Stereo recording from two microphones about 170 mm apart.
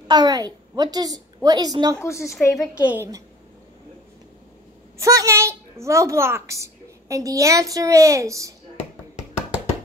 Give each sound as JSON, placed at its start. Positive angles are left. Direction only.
{"t": 0.1, "sound": "a woman's voice", "side_deg": -25}
{"t": 2.0, "sound": "a woman's voice", "side_deg": 15}
{"t": 2.7, "sound": "a woman's voice", "side_deg": -10}
{"t": 4.9, "sound": "a woman's voice", "side_deg": -15}